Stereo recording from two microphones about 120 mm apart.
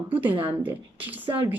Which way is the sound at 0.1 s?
15° right (ahead or behind).